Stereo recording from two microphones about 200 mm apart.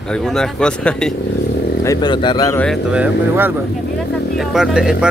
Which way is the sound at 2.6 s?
Centre (ahead or behind).